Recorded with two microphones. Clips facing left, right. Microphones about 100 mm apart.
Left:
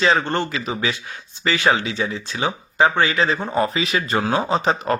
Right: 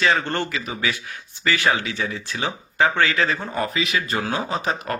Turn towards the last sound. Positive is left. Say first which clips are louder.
# left 5 dB
turn(degrees=30)  # may be behind; listen again after turning